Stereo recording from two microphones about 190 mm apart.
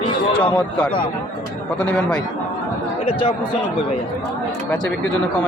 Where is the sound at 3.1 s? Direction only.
30° left (ahead or behind).